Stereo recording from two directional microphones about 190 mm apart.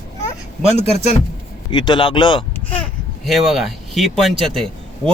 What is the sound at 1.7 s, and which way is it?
Speech, 25° left (ahead or behind).